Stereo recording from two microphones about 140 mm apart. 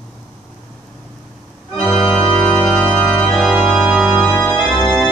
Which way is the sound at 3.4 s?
5° right (ahead or behind).